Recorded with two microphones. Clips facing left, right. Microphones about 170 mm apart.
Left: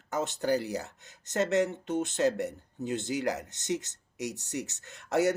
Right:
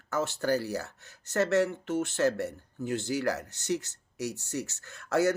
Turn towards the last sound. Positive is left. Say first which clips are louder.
# even
turn(degrees=20)  # may be behind; listen again after turning